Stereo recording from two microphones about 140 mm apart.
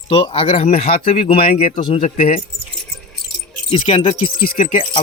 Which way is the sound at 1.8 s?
35° left (ahead or behind).